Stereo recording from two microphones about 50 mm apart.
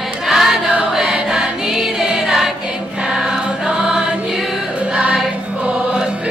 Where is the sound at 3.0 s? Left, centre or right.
Centre.